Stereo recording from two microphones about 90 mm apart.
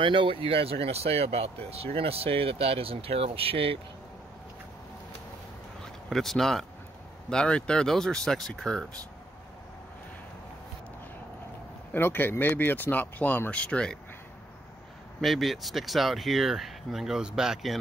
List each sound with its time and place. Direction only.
0.0 s speech: 70° right (ahead or behind); by 3.8 s 90° right
6.0 s speech: centre (ahead or behind)
11.9 s speech: 25° left (ahead or behind)
15.1 s speech: centre (ahead or behind)